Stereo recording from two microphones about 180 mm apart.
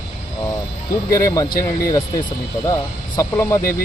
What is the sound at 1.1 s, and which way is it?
Speech, 15° left (ahead or behind).